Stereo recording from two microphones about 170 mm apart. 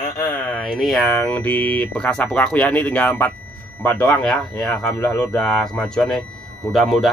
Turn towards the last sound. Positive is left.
turn(degrees=0)  # may be behind; listen again after turning